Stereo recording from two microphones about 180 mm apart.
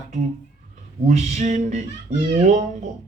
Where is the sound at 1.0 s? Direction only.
40° right (ahead or behind).